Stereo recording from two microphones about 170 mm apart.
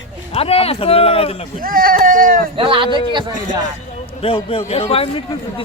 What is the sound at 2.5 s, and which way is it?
Speech, 30° right (ahead or behind).